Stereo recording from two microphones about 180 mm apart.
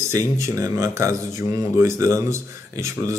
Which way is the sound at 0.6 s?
15° right (ahead or behind).